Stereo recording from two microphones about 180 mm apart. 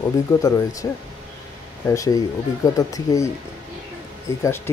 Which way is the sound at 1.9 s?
15° left (ahead or behind).